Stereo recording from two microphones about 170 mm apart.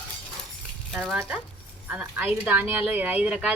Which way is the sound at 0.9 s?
Centre (ahead or behind).